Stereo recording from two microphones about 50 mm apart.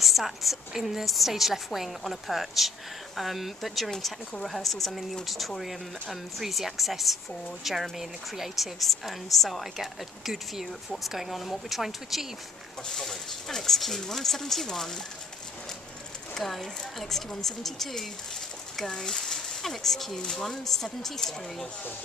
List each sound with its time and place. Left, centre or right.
0.0 s a woman's voice: centre
12.9 s speech: centre
16.3 s a woman's voice: centre